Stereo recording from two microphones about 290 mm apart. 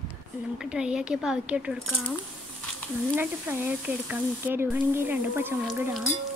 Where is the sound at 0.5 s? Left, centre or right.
Centre.